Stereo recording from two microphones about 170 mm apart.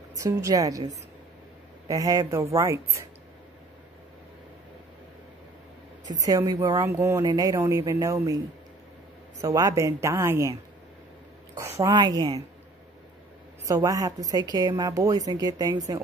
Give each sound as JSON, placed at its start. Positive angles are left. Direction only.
{"t": 0.1, "sound": "a woman's voice", "side_deg": -20}
{"t": 6.0, "sound": "a woman's voice", "side_deg": -20}
{"t": 9.4, "sound": "a woman's voice", "side_deg": -20}
{"t": 13.7, "sound": "a woman's voice", "side_deg": -20}